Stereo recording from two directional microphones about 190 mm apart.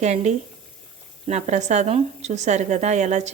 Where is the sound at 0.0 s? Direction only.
35° right (ahead or behind).